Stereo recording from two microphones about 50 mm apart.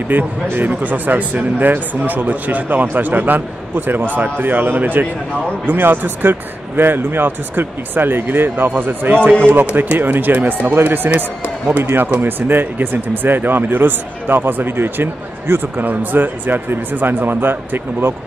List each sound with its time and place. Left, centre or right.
0.1 s speech: right
10.7 s speech: right
15.8 s speech: right